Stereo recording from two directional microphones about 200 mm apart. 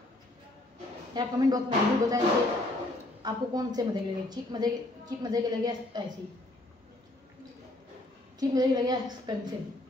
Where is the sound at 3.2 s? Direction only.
20° right (ahead or behind).